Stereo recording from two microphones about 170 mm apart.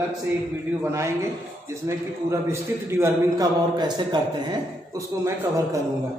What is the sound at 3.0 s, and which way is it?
A man's voice, 20° right (ahead or behind).